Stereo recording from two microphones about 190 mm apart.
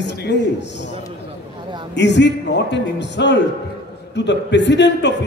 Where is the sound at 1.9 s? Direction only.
65° left (ahead or behind).